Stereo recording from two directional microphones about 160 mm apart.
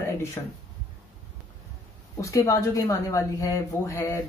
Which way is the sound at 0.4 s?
20° left (ahead or behind).